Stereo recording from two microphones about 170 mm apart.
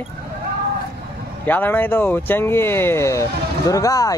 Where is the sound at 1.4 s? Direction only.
10° left (ahead or behind).